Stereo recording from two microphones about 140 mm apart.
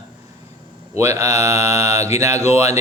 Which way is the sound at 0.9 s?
20° right (ahead or behind).